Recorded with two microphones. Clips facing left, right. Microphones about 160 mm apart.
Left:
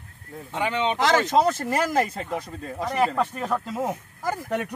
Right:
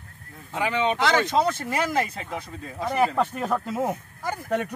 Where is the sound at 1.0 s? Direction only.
40° left (ahead or behind).